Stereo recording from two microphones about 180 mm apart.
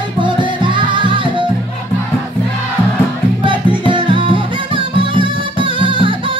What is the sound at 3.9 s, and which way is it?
Music, 30° right (ahead or behind).